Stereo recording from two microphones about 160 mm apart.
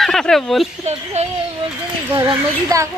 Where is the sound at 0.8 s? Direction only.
45° right (ahead or behind).